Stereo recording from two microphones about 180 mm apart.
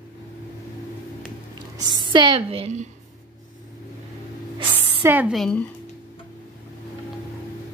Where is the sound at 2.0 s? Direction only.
25° right (ahead or behind).